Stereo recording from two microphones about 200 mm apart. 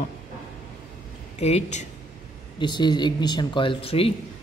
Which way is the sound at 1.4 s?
35° left (ahead or behind).